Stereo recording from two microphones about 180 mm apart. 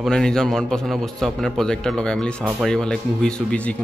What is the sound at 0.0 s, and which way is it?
A man's voice, 5° left (ahead or behind).